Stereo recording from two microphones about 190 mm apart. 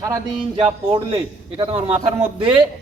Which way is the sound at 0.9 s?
30° right (ahead or behind).